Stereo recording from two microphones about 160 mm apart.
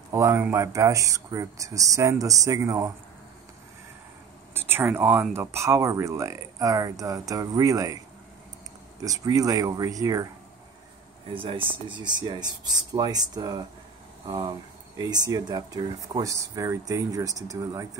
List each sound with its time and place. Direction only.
0.1 s speech: 20° right (ahead or behind)
4.6 s speech: 15° right (ahead or behind)
9.0 s speech: 20° right (ahead or behind)
11.3 s speech: 35° right (ahead or behind)